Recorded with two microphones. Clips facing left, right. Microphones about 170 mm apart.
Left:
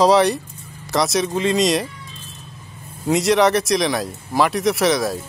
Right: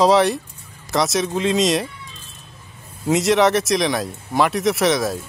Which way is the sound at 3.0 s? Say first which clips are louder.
Even; centre (ahead or behind).